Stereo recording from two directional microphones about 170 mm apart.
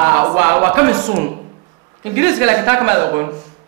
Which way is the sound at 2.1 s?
15° right (ahead or behind).